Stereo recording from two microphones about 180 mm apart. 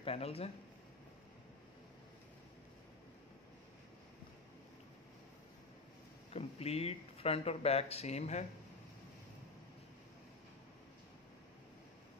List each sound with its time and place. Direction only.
0.0 s speech: 35° left (ahead or behind)
6.3 s speech: 35° left (ahead or behind)